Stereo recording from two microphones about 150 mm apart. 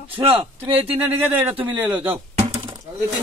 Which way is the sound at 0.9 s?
10° right (ahead or behind).